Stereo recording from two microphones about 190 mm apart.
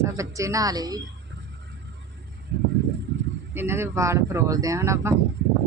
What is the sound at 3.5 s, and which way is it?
Speech, 10° right (ahead or behind).